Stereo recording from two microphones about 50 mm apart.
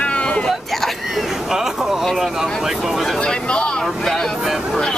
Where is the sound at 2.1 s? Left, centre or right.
Centre.